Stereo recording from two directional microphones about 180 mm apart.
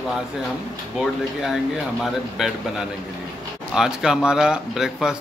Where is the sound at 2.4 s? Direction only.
5° right (ahead or behind).